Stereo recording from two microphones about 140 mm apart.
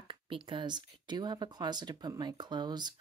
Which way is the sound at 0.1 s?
35° right (ahead or behind).